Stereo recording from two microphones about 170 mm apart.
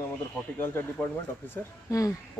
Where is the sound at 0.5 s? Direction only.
15° left (ahead or behind).